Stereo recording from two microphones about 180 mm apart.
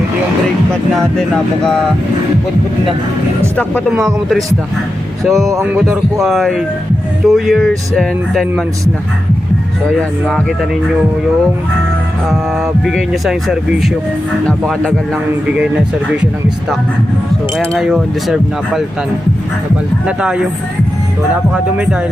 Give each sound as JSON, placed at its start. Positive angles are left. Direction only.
{"t": 3.8, "sound": "speech", "side_deg": 0}
{"t": 5.5, "sound": "speech", "side_deg": -15}
{"t": 5.8, "sound": "speech", "side_deg": 0}
{"t": 12.8, "sound": "speech", "side_deg": 0}
{"t": 17.7, "sound": "speech", "side_deg": -5}
{"t": 20.1, "sound": "speech", "side_deg": -5}